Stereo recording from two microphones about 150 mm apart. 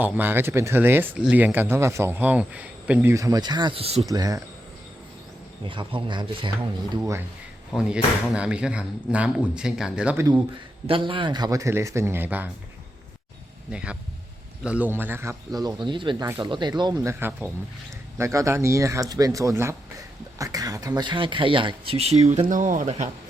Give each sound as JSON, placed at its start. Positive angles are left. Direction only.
{"t": 0.0, "sound": "speech", "side_deg": -15}
{"t": 4.0, "sound": "speech", "side_deg": -25}
{"t": 5.6, "sound": "speech", "side_deg": -35}
{"t": 7.7, "sound": "speech", "side_deg": -5}
{"t": 10.8, "sound": "speech", "side_deg": -35}
{"t": 13.7, "sound": "speech", "side_deg": -5}
{"t": 22.4, "sound": "speech", "side_deg": -60}